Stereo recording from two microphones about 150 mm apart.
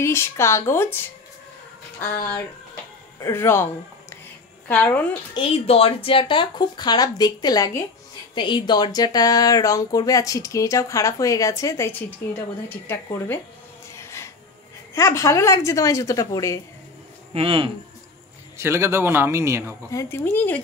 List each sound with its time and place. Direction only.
0.0 s speech: 20° left (ahead or behind)
2.0 s speech: 15° left (ahead or behind)
4.6 s speech: 10° left (ahead or behind)
5.3 s speech: 40° left (ahead or behind); by 13.4 s 15° left (ahead or behind)
13.9 s music: 20° left (ahead or behind)
15.0 s speech: 20° left (ahead or behind)
17.3 s speech: 40° right (ahead or behind)
18.6 s a man's voice: 15° right (ahead or behind)
19.9 s speech: 20° left (ahead or behind)